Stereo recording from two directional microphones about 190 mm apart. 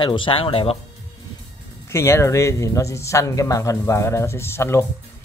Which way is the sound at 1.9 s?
15° left (ahead or behind).